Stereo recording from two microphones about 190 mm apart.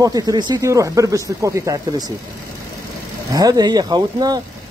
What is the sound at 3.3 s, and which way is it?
Speech, 20° right (ahead or behind).